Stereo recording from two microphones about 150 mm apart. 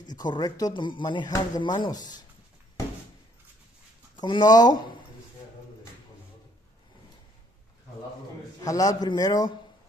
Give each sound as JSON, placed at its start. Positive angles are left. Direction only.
{"t": 0.0, "sound": "speech", "side_deg": 30}
{"t": 4.2, "sound": "speech", "side_deg": 30}
{"t": 8.5, "sound": "speech", "side_deg": 25}